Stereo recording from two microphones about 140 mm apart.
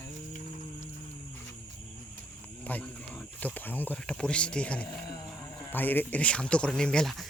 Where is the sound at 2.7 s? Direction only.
10° left (ahead or behind).